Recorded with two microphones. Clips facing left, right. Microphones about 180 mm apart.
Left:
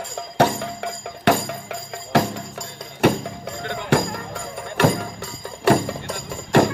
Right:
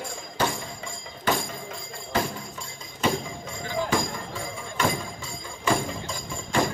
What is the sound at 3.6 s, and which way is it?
Music, 65° left (ahead or behind).